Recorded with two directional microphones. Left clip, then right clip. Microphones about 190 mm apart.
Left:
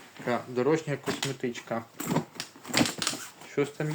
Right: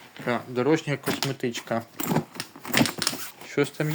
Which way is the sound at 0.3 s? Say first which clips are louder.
Right 3 dB; 35° right (ahead or behind).